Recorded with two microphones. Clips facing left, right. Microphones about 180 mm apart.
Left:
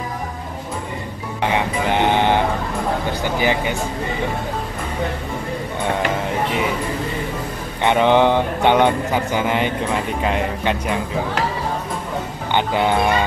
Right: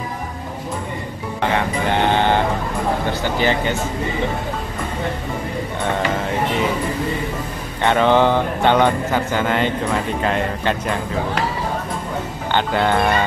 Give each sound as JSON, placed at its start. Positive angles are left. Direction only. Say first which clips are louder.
{"t": 1.4, "sound": "a sound", "louder": "even", "side_deg": 15}
{"t": 3.3, "sound": "speech", "louder": "even", "side_deg": 15}
{"t": 7.8, "sound": "speech", "louder": "even", "side_deg": 15}
{"t": 12.5, "sound": "speech", "louder": "even", "side_deg": 15}